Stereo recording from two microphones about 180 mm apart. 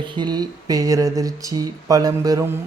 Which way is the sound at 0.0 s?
25° right (ahead or behind).